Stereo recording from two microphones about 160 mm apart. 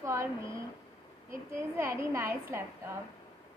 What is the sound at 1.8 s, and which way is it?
Speech, 15° right (ahead or behind).